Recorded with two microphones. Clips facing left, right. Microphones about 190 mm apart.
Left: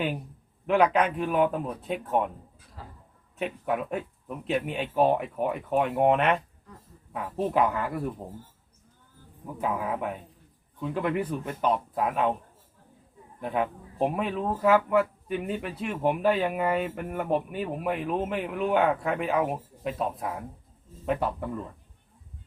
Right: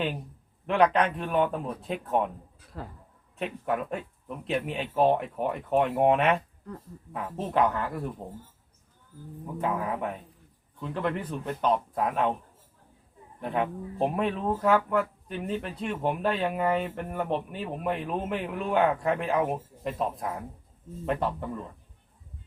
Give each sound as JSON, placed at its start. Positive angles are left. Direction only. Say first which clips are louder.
{"t": 0.7, "sound": "speech", "louder": "left 1 dB", "side_deg": 5}
{"t": 2.7, "sound": "speech", "louder": "right 6 dB", "side_deg": -60}
{"t": 3.3, "sound": "a woman's voice", "louder": "left 1 dB", "side_deg": 0}
{"t": 9.6, "sound": "speech", "louder": "even", "side_deg": 5}
{"t": 13.4, "sound": "speech", "louder": "even", "side_deg": 0}